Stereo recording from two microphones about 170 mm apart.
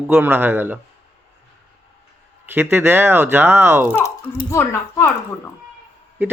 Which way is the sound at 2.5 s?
15° right (ahead or behind).